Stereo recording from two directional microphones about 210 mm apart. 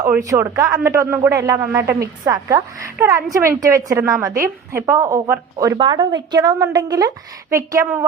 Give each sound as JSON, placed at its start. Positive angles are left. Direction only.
{"t": 0.0, "sound": "a woman's voice", "side_deg": -15}